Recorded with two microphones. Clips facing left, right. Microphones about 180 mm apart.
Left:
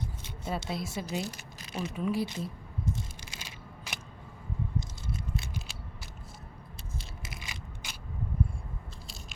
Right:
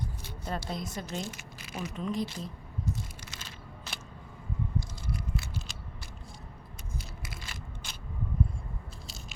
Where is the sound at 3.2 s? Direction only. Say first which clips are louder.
Even; 10° left (ahead or behind).